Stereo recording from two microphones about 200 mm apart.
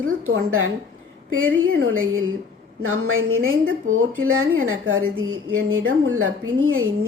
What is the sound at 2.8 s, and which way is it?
A woman's voice, 90° right.